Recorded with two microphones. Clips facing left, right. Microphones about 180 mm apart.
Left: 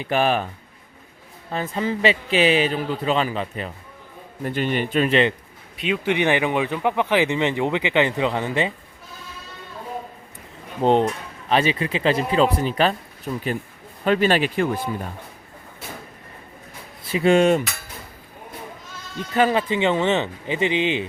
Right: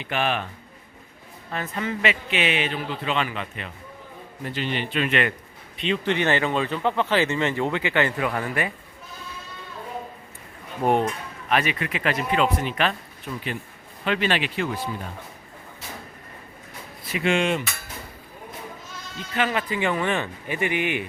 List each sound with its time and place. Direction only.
0.0 s speech: 40° left (ahead or behind)
1.5 s speech: 30° left (ahead or behind)
4.4 s speech: 50° left (ahead or behind); by 5.3 s 35° left (ahead or behind)
5.7 s speech: 5° left (ahead or behind); by 8.7 s 25° left (ahead or behind)
10.8 s speech: 20° left (ahead or behind); by 14.8 s 50° left (ahead or behind)
17.0 s speech: 30° left (ahead or behind)
19.3 s speech: 40° left (ahead or behind)
19.6 s speech: 25° left (ahead or behind)